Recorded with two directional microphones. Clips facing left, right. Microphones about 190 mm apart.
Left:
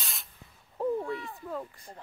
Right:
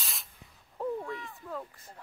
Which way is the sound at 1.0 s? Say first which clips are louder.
Left 4 dB; 35° left (ahead or behind).